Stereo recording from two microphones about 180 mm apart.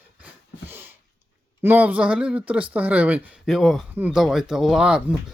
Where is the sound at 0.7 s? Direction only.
10° right (ahead or behind).